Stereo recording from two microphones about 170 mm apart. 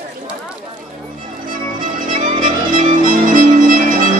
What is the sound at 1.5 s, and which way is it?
Music, 50° right (ahead or behind).